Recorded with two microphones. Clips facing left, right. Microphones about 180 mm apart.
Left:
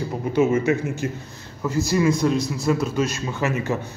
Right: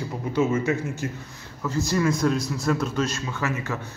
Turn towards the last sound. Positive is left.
turn(degrees=20)  # may be behind; listen again after turning